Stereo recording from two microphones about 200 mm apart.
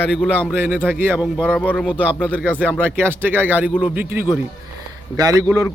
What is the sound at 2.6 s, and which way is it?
Speech, 10° right (ahead or behind).